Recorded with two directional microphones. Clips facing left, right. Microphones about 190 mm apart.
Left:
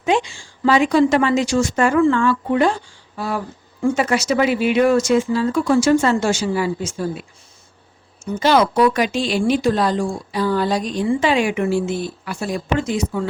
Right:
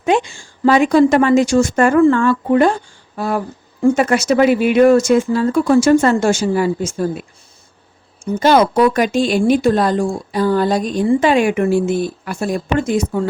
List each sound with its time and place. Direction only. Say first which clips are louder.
0.0 s a woman's voice: right 3 dB; 50° right (ahead or behind)
8.4 s speech: right 3 dB; 50° right (ahead or behind)